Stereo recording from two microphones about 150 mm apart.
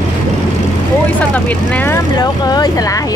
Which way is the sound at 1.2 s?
10° left (ahead or behind).